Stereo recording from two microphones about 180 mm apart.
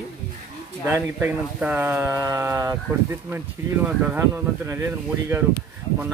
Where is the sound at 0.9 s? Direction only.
10° right (ahead or behind).